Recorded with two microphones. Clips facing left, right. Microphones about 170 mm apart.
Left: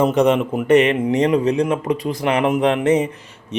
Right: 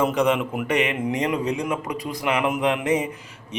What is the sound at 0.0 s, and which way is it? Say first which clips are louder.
Speech: left 5 dB; 35° left (ahead or behind).